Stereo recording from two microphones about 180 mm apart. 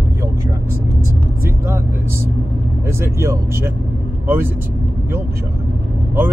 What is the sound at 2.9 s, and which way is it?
Speech, 15° right (ahead or behind).